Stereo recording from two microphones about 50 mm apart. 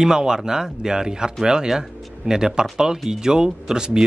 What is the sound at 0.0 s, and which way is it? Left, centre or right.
Speech, centre.